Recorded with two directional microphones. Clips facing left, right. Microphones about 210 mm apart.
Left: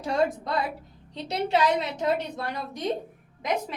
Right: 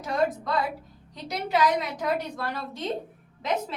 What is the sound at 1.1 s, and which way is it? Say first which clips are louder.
A woman's voice: left 2 dB; 30° left (ahead or behind).